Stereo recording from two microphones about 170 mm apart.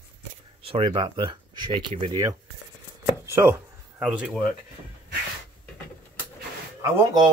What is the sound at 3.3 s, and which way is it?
Speech, 15° right (ahead or behind).